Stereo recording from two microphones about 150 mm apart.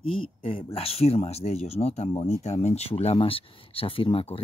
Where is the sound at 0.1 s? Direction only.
35° left (ahead or behind).